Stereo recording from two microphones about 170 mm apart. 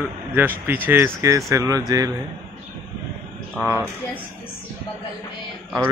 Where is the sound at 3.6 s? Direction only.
15° right (ahead or behind).